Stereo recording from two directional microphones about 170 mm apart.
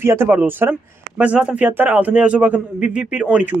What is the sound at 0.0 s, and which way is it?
A man's voice, 15° right (ahead or behind).